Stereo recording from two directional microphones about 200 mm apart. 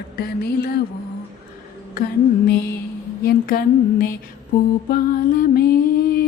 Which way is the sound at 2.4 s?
50° left (ahead or behind).